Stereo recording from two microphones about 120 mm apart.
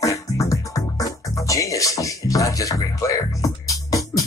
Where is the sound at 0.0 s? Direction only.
25° left (ahead or behind).